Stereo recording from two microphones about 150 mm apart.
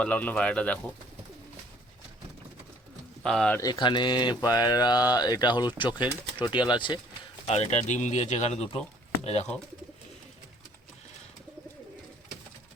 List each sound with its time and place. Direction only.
0.0 s speech: 10° left (ahead or behind)
3.2 s speech: 5° left (ahead or behind)
3.6 s speech: 30° left (ahead or behind)
7.4 s speech: 45° left (ahead or behind)